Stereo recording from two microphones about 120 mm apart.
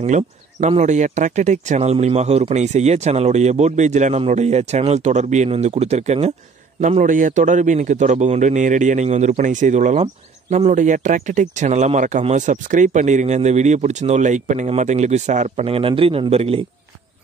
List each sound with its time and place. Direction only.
0.0 s speech: 80° right
4.3 s speech: 65° right (ahead or behind)
6.8 s a man's voice: 90° right
14.8 s speech: 70° right (ahead or behind)
15.6 s a man's voice: 50° right (ahead or behind)